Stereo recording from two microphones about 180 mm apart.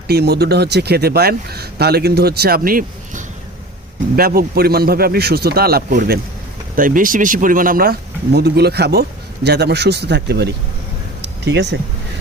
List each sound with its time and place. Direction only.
0.1 s speech: 65° right (ahead or behind)